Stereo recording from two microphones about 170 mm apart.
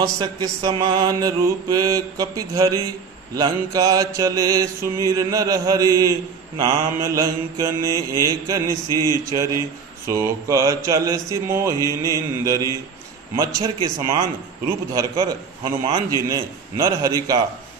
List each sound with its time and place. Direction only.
0.0 s mantra: 20° right (ahead or behind)